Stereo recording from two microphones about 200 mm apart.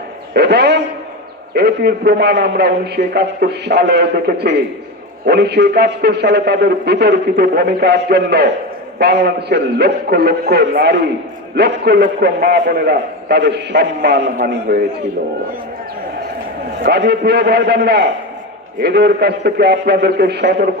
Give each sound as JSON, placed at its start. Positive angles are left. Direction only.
{"t": 0.3, "sound": "a man's voice", "side_deg": -55}
{"t": 16.8, "sound": "a man's voice", "side_deg": -55}